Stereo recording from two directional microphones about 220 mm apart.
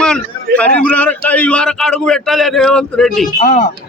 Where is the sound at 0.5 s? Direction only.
5° left (ahead or behind).